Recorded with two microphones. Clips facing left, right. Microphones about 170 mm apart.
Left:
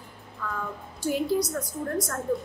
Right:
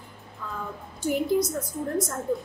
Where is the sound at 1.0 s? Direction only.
20° right (ahead or behind).